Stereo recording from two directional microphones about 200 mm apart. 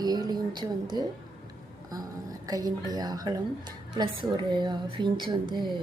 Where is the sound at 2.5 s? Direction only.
20° right (ahead or behind).